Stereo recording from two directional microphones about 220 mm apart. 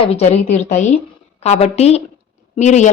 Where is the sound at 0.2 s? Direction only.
30° left (ahead or behind).